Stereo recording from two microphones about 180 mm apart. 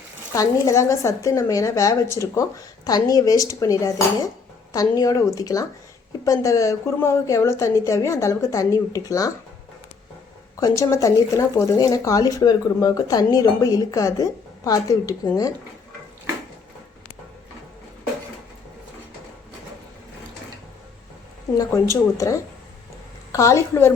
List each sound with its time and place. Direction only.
0.3 s speech: 15° left (ahead or behind)
10.6 s speech: 15° left (ahead or behind)
21.6 s speech: 15° left (ahead or behind)